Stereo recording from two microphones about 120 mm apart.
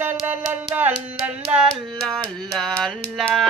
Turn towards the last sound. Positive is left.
turn(degrees=0)  # may be behind; listen again after turning